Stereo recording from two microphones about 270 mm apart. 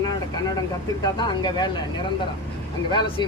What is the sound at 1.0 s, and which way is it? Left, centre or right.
Speech, centre.